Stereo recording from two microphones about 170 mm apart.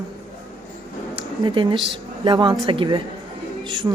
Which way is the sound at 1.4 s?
25° right (ahead or behind).